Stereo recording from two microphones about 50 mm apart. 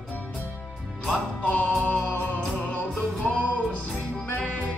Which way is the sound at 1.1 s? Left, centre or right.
Left.